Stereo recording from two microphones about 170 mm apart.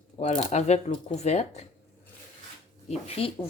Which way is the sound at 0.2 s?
40° left (ahead or behind).